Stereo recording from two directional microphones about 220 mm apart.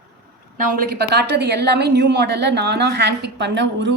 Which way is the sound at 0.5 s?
40° right (ahead or behind).